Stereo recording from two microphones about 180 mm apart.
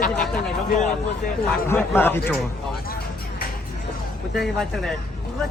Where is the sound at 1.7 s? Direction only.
15° left (ahead or behind).